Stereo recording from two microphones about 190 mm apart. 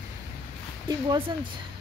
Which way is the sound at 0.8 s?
25° right (ahead or behind).